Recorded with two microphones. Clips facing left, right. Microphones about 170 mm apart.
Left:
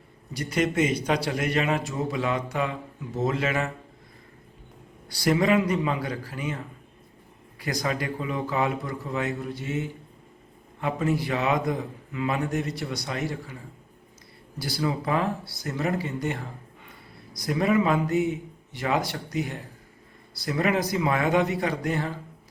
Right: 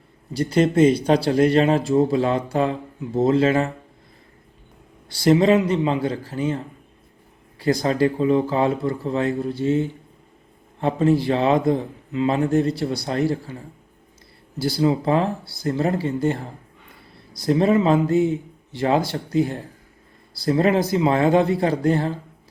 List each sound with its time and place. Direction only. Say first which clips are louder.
0.3 s speech: right 8 dB; 30° right (ahead or behind)
5.1 s speech: right 6 dB; 25° right (ahead or behind)
14.6 s speech: right 8 dB; 25° right (ahead or behind)